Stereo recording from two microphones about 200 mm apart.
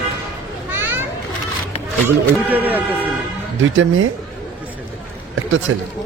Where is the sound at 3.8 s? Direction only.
80° right.